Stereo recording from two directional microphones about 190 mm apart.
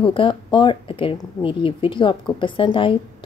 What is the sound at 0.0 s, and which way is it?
A woman's voice, 25° left (ahead or behind).